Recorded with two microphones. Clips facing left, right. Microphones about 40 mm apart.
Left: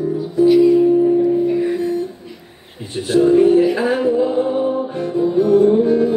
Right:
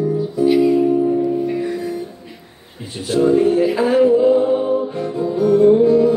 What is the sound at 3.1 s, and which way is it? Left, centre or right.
Music, centre.